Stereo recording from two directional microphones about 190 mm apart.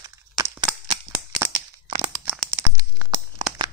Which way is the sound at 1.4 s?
20° right (ahead or behind).